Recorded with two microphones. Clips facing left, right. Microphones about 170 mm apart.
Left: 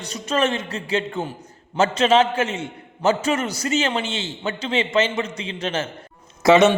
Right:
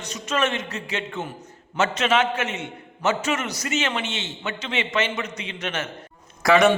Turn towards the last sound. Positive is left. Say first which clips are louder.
# left 3 dB
turn(degrees=20)  # may be behind; listen again after turning